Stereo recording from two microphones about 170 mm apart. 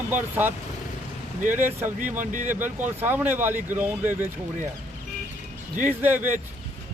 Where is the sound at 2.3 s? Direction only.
50° right (ahead or behind).